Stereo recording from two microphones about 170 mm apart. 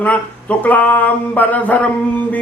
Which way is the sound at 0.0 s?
10° left (ahead or behind).